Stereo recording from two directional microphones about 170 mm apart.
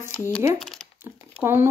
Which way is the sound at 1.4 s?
15° right (ahead or behind).